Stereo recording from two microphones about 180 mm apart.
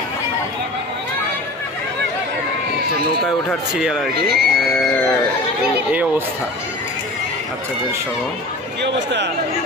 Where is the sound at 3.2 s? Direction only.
Centre (ahead or behind).